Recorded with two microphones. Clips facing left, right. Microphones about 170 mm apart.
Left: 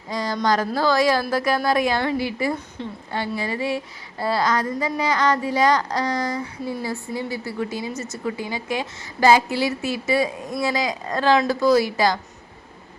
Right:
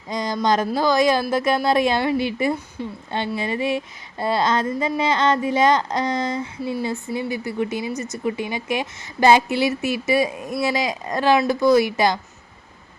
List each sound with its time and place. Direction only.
0.1 s speech: 20° right (ahead or behind)